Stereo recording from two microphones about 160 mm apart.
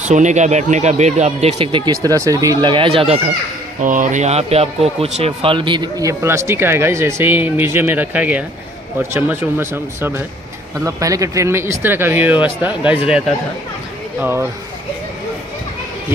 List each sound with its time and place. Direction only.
0.0 s speech: 50° right (ahead or behind); by 2.0 s 30° right (ahead or behind)
2.0 s speech: 20° right (ahead or behind)
3.8 s speech: 55° right (ahead or behind); by 13.0 s 10° right (ahead or behind)